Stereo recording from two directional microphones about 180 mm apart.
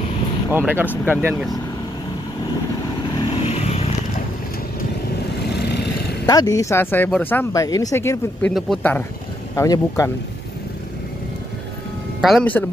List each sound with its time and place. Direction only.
0.5 s speech: 10° right (ahead or behind)
3.2 s vehicle: 35° left (ahead or behind)
6.2 s speech: 20° left (ahead or behind); by 9.0 s 5° left (ahead or behind)
9.6 s speech: 15° left (ahead or behind)
12.2 s speech: centre (ahead or behind)